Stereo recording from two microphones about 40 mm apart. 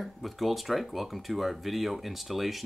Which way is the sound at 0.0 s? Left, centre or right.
Centre.